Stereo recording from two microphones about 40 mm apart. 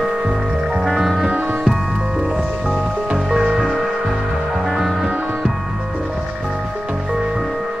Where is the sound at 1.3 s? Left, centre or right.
Right.